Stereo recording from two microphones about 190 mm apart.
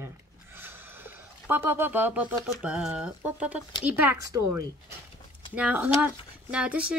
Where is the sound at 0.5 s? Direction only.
10° right (ahead or behind).